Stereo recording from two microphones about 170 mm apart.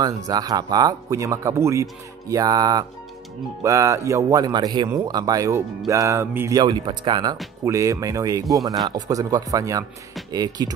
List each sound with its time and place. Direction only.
0.3 s a man's voice: 25° right (ahead or behind)